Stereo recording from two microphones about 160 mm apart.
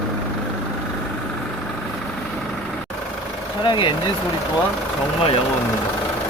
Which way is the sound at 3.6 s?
30° left (ahead or behind).